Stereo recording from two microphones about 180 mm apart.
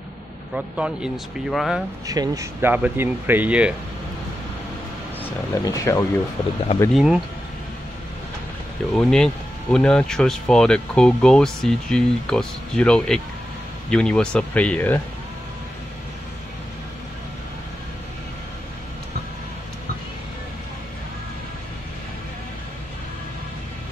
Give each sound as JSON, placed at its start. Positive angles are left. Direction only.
{"t": 0.6, "sound": "speech", "side_deg": -5}
{"t": 2.0, "sound": "speech", "side_deg": -20}
{"t": 5.5, "sound": "speech", "side_deg": 15}
{"t": 6.9, "sound": "speech", "side_deg": 0}
{"t": 8.9, "sound": "speech", "side_deg": 5}